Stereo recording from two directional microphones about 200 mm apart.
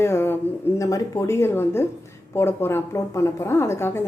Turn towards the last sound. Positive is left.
turn(degrees=10)  # may be behind; listen again after turning